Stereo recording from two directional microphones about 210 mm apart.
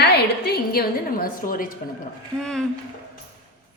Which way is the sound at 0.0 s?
50° left (ahead or behind).